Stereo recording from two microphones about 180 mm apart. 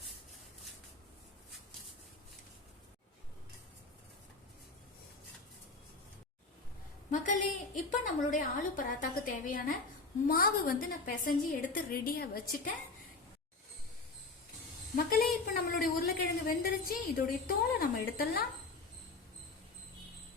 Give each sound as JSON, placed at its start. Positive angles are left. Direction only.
{"t": 7.1, "sound": "a woman's voice", "side_deg": 45}
{"t": 14.9, "sound": "a sound", "side_deg": 55}
{"t": 16.5, "sound": "a woman's voice", "side_deg": 55}